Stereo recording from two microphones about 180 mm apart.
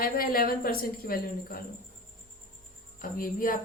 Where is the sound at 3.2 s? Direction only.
50° left (ahead or behind).